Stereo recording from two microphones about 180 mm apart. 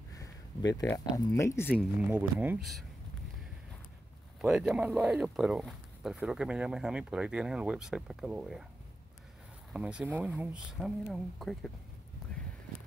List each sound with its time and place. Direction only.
0.1 s speech: 20° left (ahead or behind)
2.0 s speech: 10° right (ahead or behind)
4.4 s speech: 5° right (ahead or behind)
9.7 s speech: 5° right (ahead or behind)